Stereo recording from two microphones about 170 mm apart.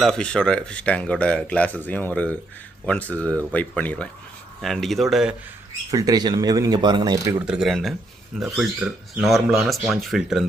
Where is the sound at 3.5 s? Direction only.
10° left (ahead or behind).